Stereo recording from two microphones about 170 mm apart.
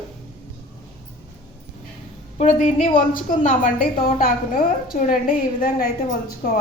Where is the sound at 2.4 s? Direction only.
45° left (ahead or behind).